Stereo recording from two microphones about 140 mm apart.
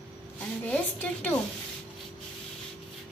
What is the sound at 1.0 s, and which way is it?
Speech, 10° left (ahead or behind).